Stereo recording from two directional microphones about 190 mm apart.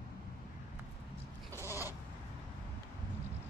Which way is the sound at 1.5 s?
15° left (ahead or behind).